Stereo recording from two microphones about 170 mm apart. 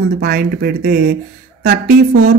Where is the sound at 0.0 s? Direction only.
70° right (ahead or behind).